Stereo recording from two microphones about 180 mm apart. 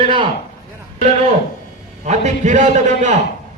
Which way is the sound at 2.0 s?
40° right (ahead or behind).